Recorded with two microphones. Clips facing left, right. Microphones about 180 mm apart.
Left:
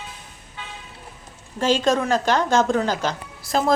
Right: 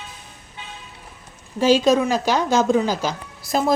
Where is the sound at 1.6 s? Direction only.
10° right (ahead or behind).